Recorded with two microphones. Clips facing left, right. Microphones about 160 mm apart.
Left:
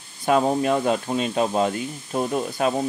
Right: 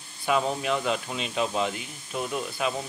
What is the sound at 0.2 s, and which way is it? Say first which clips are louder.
Speech: left 6 dB; 40° left (ahead or behind).